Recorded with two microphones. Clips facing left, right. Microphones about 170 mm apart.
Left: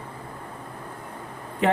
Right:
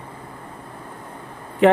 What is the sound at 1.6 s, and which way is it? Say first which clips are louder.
Speech: right 8 dB; 75° right (ahead or behind).